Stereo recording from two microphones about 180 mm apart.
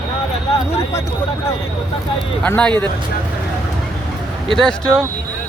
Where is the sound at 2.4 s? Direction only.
10° left (ahead or behind).